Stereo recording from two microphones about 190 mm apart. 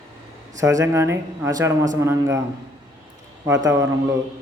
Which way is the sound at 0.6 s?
15° right (ahead or behind).